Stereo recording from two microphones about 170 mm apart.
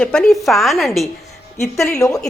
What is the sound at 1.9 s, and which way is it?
Speech, 20° left (ahead or behind).